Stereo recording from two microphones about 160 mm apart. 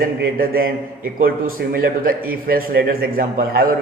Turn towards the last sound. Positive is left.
turn(degrees=-65)  # may be behind; listen again after turning